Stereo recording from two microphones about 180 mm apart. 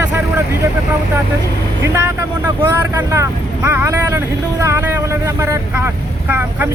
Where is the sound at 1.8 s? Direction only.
15° right (ahead or behind).